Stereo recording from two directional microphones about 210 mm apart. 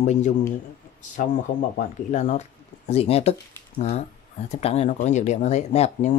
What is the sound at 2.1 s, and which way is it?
Speech, 35° left (ahead or behind).